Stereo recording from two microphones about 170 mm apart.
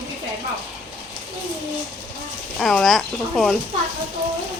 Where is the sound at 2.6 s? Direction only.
Centre (ahead or behind).